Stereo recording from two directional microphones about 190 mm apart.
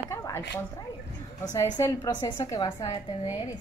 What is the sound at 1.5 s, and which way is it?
A woman's voice, 15° left (ahead or behind).